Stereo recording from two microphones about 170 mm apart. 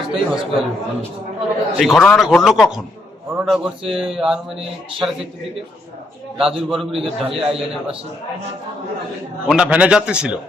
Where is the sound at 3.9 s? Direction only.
Centre (ahead or behind).